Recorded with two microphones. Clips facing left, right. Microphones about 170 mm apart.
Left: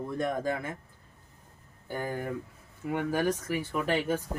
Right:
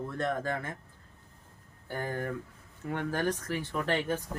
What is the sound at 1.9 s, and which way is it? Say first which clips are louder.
Speech: left 1 dB; 15° left (ahead or behind).